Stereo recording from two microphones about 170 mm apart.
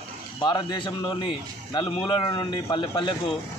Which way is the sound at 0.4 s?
25° left (ahead or behind).